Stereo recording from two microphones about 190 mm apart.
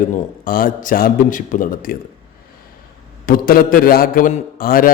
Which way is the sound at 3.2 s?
50° left (ahead or behind).